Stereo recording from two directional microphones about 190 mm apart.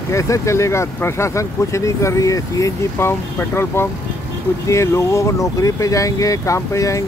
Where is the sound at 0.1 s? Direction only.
15° left (ahead or behind).